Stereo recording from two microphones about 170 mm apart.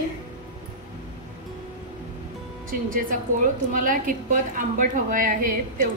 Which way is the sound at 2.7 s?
55° right (ahead or behind).